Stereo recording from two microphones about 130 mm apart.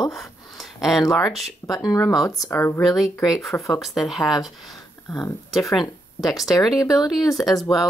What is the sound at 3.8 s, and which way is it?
Speech, centre (ahead or behind).